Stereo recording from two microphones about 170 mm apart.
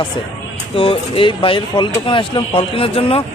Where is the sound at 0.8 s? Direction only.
35° left (ahead or behind).